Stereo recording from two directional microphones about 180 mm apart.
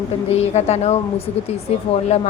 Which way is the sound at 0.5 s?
35° left (ahead or behind).